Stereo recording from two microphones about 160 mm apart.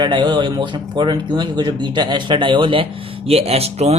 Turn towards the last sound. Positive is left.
turn(degrees=-40)  # may be behind; listen again after turning